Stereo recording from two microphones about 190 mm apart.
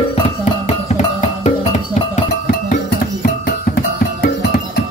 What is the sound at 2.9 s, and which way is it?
Music, 50° left (ahead or behind).